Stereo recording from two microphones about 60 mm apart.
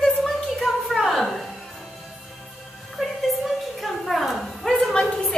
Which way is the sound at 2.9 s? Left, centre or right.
Centre.